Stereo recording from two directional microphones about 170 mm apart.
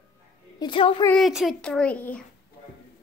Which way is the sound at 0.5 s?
30° left (ahead or behind).